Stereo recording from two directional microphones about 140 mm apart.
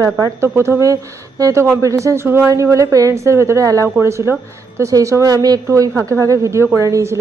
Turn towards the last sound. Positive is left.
turn(degrees=-20)  # may be behind; listen again after turning